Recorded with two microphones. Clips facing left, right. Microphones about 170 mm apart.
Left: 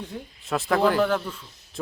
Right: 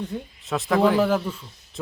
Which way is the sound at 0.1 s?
Centre (ahead or behind).